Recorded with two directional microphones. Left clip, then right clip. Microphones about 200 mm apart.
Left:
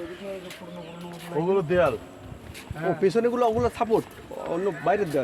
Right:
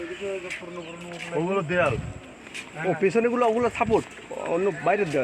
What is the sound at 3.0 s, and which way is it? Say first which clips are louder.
Speech: even; 35° right (ahead or behind).